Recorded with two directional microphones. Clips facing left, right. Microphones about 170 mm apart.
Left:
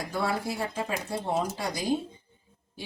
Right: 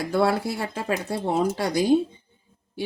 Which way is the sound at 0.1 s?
70° right (ahead or behind).